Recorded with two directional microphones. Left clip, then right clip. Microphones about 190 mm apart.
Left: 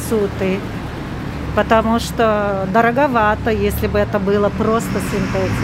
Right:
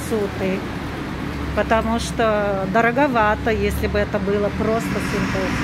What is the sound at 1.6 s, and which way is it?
Speech, 20° left (ahead or behind).